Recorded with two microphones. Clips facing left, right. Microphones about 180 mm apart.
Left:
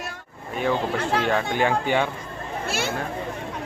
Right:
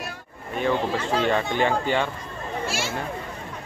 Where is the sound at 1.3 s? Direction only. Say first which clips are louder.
Right 1 dB; 5° left (ahead or behind).